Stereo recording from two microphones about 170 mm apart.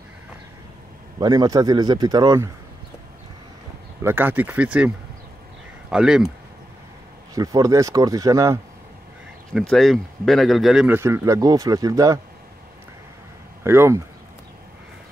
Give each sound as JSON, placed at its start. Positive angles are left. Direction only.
{"t": 1.2, "sound": "speech", "side_deg": -20}
{"t": 4.0, "sound": "speech", "side_deg": -10}
{"t": 7.3, "sound": "speech", "side_deg": -20}
{"t": 9.5, "sound": "speech", "side_deg": 0}
{"t": 11.0, "sound": "speech", "side_deg": -15}
{"t": 13.7, "sound": "speech", "side_deg": -15}